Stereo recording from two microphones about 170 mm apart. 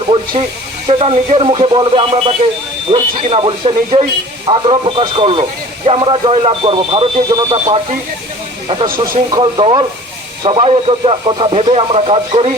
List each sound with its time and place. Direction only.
0.9 s speech: 30° right (ahead or behind)